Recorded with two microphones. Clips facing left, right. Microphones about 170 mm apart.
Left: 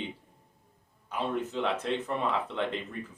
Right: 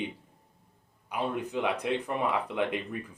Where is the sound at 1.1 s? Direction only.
15° right (ahead or behind).